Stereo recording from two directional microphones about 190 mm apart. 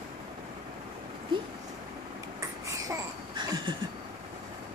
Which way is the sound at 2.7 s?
15° right (ahead or behind).